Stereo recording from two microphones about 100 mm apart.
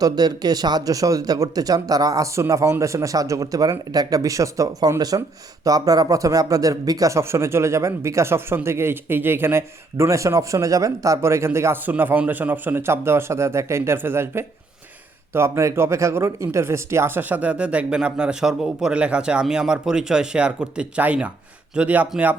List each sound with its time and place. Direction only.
0.0 s speech: 40° right (ahead or behind); by 22.4 s 15° right (ahead or behind)